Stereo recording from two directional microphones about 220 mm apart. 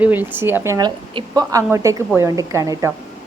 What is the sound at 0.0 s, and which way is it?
A woman's voice, 10° right (ahead or behind).